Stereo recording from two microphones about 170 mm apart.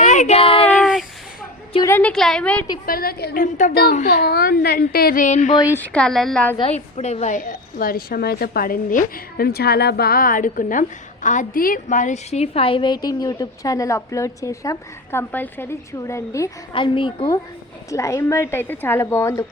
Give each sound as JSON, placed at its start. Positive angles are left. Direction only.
{"t": 0.0, "sound": "a sound", "side_deg": 45}
{"t": 0.8, "sound": "a sound", "side_deg": 0}
{"t": 1.9, "sound": "a woman's voice", "side_deg": 10}
{"t": 2.8, "sound": "speech", "side_deg": 60}
{"t": 3.4, "sound": "a woman's voice", "side_deg": 50}
{"t": 3.9, "sound": "speech", "side_deg": 60}
{"t": 5.7, "sound": "a woman's voice", "side_deg": 10}
{"t": 6.6, "sound": "a woman's voice", "side_deg": 35}
{"t": 16.7, "sound": "a woman's voice", "side_deg": 30}